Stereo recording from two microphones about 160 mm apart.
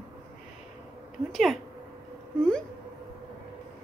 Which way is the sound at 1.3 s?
Centre (ahead or behind).